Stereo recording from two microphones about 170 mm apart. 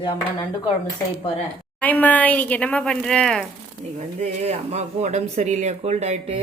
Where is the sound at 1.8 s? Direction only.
10° left (ahead or behind).